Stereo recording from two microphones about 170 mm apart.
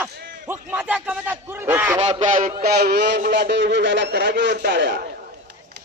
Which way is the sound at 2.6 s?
70° right (ahead or behind).